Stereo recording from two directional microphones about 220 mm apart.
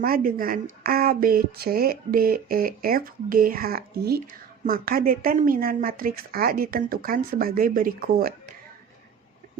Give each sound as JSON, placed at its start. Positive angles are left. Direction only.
{"t": 0.0, "sound": "speech", "side_deg": -40}